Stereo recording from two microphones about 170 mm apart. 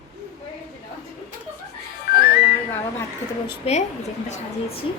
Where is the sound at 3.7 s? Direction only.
35° left (ahead or behind).